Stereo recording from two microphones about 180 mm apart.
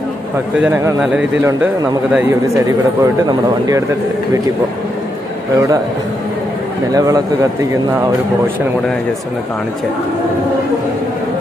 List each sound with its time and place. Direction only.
0.6 s speech: 10° right (ahead or behind)
6.9 s speech: 20° right (ahead or behind)